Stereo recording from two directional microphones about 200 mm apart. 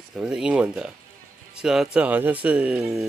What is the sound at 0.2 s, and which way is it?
Speech, 5° right (ahead or behind).